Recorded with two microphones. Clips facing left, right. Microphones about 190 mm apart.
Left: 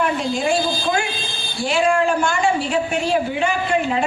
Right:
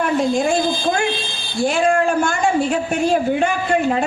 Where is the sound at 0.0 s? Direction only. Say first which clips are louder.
Right 3 dB; 45° right (ahead or behind).